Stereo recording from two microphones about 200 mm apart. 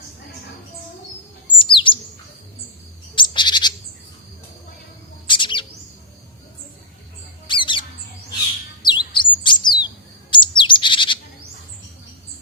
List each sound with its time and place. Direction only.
1.5 s bird: 25° left (ahead or behind)
3.2 s bird: 25° left (ahead or behind)
5.2 s bird: 25° left (ahead or behind)
7.4 s squawk: 25° left (ahead or behind)
8.8 s chirp: 20° left (ahead or behind)
10.3 s bird: 25° left (ahead or behind)